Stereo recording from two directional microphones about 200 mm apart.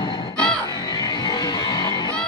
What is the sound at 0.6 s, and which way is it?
Music, 20° left (ahead or behind).